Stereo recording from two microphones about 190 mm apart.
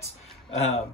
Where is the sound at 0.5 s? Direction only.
35° left (ahead or behind).